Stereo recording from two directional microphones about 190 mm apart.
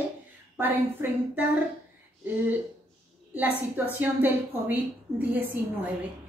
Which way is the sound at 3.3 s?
10° right (ahead or behind).